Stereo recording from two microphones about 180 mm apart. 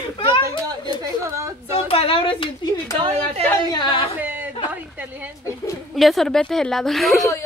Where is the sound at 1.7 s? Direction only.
35° left (ahead or behind).